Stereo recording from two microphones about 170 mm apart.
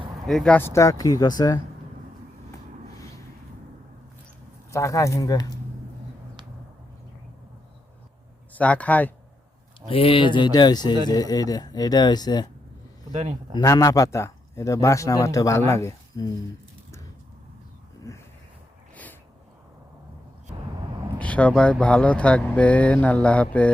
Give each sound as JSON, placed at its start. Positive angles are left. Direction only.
{"t": 0.3, "sound": "speech", "side_deg": 5}
{"t": 4.7, "sound": "speech", "side_deg": 20}
{"t": 8.5, "sound": "speech", "side_deg": 10}
{"t": 9.9, "sound": "speech", "side_deg": 30}
{"t": 13.6, "sound": "speech", "side_deg": 20}
{"t": 21.2, "sound": "speech", "side_deg": 10}